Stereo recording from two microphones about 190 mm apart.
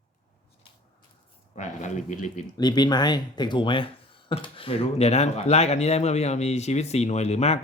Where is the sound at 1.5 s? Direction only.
40° left (ahead or behind).